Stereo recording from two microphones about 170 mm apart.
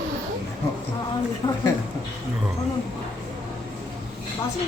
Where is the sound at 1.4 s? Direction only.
20° left (ahead or behind).